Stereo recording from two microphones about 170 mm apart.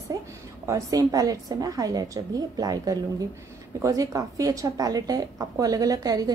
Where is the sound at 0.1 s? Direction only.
20° right (ahead or behind).